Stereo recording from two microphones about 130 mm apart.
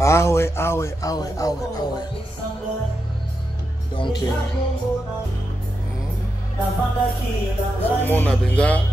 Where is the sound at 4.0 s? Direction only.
35° left (ahead or behind).